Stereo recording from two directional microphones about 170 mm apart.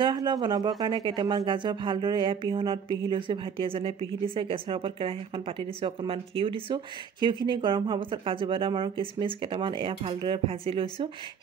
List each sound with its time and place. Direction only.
0.0 s speech: 25° right (ahead or behind)